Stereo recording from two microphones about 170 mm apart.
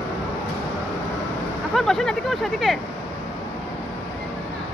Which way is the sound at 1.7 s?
Centre (ahead or behind).